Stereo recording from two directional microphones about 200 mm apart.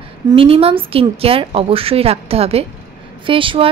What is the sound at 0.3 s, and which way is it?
A woman's voice, 25° right (ahead or behind).